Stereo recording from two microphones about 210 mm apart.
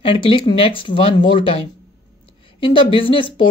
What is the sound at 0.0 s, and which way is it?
Speech, 25° left (ahead or behind).